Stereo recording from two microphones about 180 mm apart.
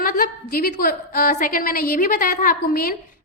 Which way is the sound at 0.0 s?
50° left (ahead or behind).